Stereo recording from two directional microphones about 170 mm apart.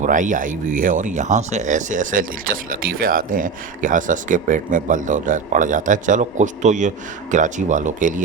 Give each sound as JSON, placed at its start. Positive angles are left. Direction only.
{"t": 0.0, "sound": "speech", "side_deg": -50}